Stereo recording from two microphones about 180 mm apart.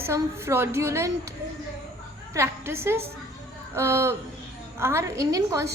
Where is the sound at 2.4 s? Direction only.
15° right (ahead or behind).